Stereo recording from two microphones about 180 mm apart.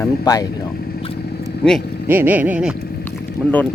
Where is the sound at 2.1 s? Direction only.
10° right (ahead or behind).